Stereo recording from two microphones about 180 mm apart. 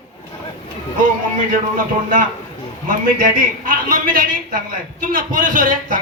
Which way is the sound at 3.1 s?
50° right (ahead or behind).